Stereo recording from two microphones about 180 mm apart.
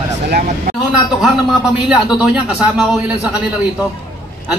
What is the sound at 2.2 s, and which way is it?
Speech, 5° right (ahead or behind).